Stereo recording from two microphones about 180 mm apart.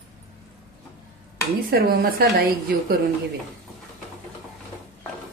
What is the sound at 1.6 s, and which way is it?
Speech, 55° right (ahead or behind).